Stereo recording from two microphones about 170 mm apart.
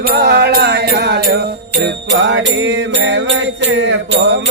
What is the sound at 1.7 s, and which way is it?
Music, 85° right.